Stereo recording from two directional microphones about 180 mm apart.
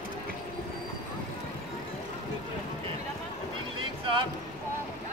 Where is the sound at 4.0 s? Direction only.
30° right (ahead or behind).